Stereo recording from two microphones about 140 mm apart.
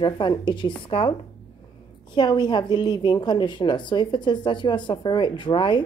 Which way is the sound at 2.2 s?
30° left (ahead or behind).